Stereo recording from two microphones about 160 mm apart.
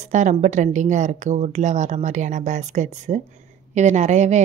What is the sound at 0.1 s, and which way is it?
A woman's voice, 50° right (ahead or behind).